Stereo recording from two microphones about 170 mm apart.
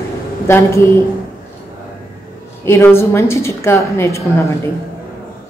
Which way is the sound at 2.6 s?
15° left (ahead or behind).